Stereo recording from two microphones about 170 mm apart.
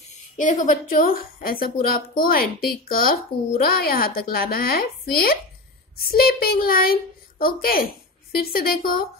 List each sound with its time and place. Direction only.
0.4 s speech: 50° left (ahead or behind)